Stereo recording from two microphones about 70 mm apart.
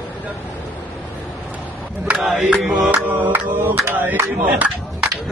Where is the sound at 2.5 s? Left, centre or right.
Centre.